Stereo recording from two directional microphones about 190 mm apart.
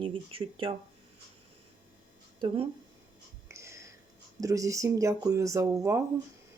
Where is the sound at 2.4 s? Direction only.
25° right (ahead or behind).